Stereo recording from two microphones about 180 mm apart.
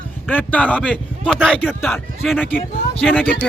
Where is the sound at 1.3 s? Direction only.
5° right (ahead or behind).